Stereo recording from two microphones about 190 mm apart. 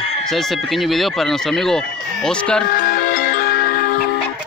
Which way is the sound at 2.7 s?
50° left (ahead or behind).